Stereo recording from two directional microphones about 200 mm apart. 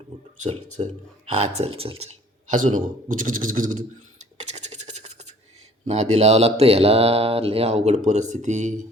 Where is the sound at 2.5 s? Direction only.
40° right (ahead or behind).